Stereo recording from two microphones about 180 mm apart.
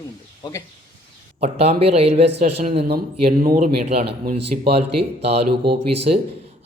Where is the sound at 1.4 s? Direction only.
35° right (ahead or behind).